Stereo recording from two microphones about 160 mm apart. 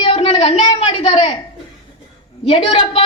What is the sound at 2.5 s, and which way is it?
Speech, 35° left (ahead or behind).